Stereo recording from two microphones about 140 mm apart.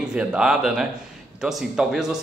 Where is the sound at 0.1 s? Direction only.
5° right (ahead or behind).